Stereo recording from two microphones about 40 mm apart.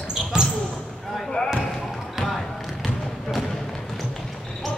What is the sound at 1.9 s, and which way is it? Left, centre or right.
Basketball bounce, centre.